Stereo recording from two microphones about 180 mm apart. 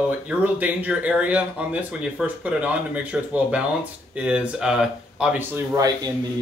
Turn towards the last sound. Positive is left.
turn(degrees=-20)  # may be behind; listen again after turning